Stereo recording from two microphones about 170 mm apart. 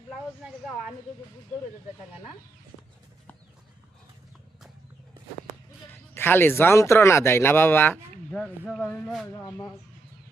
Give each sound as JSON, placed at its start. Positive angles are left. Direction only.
{"t": 5.9, "sound": "speech", "side_deg": 15}
{"t": 9.3, "sound": "speech", "side_deg": 20}